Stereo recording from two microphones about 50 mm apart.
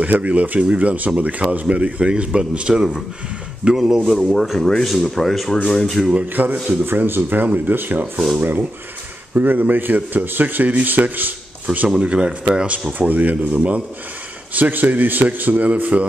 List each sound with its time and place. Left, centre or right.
0.0 s speech: right; by 4.4 s centre
4.4 s speech: centre
6.1 s speech: right
6.8 s speech: right
7.4 s speech: right
12.0 s speech: right